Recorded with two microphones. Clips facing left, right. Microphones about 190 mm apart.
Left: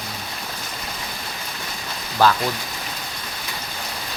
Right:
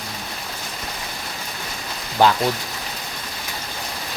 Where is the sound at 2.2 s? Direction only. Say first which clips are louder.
Right 1 dB; 20° right (ahead or behind).